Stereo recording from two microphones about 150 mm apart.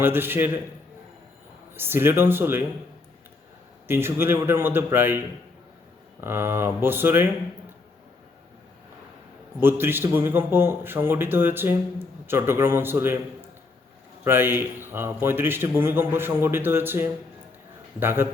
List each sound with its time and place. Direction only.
0.0 s a man's voice: 15° right (ahead or behind)
1.7 s a man's voice: 15° right (ahead or behind)
3.8 s a man's voice: 15° right (ahead or behind)
9.6 s a man's voice: 15° right (ahead or behind)